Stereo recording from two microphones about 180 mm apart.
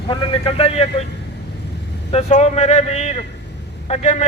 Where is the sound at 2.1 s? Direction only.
40° left (ahead or behind).